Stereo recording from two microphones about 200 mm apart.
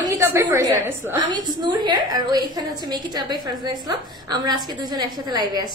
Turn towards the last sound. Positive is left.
turn(degrees=-20)  # may be behind; listen again after turning